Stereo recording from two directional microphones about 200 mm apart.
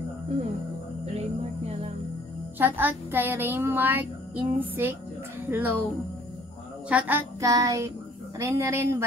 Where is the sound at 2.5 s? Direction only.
10° right (ahead or behind).